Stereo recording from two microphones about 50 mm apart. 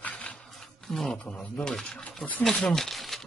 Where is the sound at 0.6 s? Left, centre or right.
Centre.